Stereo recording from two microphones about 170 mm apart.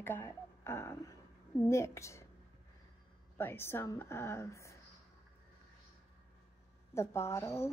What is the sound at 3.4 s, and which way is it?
Speech, 15° left (ahead or behind).